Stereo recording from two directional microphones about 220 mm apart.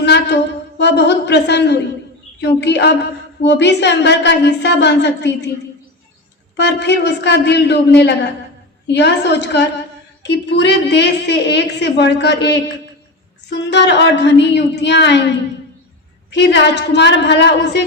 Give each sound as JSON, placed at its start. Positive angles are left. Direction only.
{"t": 0.0, "sound": "a sound", "side_deg": 50}
{"t": 0.8, "sound": "a woman's voice", "side_deg": 50}
{"t": 6.6, "sound": "a woman's voice", "side_deg": 50}